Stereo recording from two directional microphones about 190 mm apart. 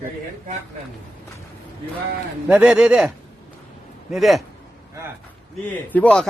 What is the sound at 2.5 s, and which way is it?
Speech, 5° right (ahead or behind).